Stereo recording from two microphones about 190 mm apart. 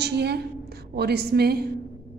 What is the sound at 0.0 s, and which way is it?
A woman's voice, 60° right (ahead or behind).